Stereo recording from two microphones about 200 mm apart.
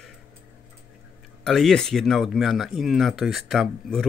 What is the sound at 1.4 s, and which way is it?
Speech, centre (ahead or behind).